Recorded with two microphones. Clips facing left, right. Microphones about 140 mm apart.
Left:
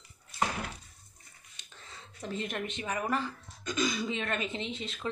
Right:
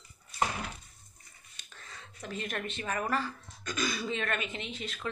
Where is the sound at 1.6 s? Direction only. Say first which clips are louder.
Right 1 dB; 25° left (ahead or behind).